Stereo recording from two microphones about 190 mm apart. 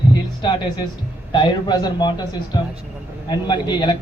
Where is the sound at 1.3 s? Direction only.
25° left (ahead or behind).